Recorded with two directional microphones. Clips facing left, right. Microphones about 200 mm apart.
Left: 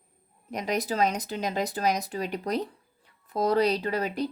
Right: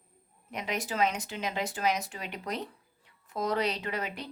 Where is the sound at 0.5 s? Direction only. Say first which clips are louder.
Left 5 dB; 40° left (ahead or behind).